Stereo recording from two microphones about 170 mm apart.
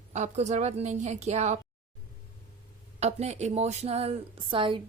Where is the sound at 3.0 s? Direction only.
40° right (ahead or behind).